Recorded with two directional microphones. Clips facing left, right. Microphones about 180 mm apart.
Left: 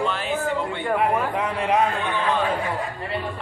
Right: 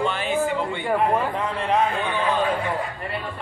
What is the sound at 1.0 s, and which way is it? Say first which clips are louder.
Speech: even; 10° left (ahead or behind).